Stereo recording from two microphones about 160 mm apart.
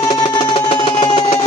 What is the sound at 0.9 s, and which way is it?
Music, 45° left (ahead or behind).